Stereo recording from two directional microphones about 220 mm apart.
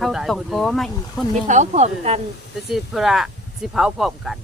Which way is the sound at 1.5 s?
30° right (ahead or behind).